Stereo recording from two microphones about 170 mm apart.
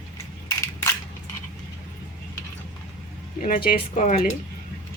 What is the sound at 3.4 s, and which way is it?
Speech, 55° left (ahead or behind).